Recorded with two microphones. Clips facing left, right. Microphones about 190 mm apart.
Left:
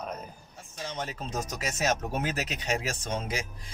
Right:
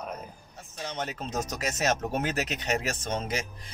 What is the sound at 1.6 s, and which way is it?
Speech, 5° left (ahead or behind).